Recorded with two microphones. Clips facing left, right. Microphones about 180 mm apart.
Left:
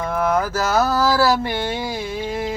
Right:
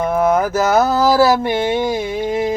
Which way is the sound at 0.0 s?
20° right (ahead or behind).